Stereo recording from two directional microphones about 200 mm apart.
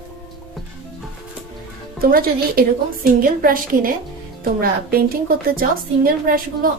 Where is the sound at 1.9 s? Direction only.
45° right (ahead or behind).